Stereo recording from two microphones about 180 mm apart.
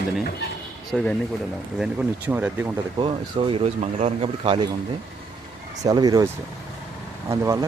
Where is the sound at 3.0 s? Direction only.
30° right (ahead or behind).